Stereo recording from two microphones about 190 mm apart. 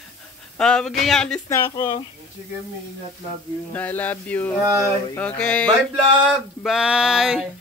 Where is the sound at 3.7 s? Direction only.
10° left (ahead or behind).